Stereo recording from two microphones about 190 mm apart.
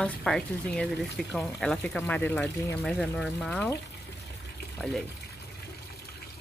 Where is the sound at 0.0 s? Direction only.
5° left (ahead or behind).